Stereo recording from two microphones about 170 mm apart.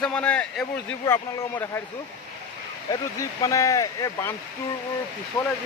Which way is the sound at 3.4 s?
20° left (ahead or behind).